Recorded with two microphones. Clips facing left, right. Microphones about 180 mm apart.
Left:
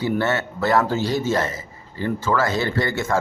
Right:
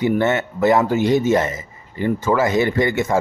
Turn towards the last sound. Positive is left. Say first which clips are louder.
# right 4 dB
turn(degrees=-15)  # may be behind; listen again after turning